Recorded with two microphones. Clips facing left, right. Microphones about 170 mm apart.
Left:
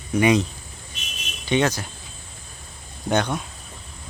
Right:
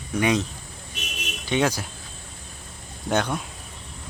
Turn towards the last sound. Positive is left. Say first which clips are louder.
# left 2 dB
turn(degrees=-5)  # may be behind; listen again after turning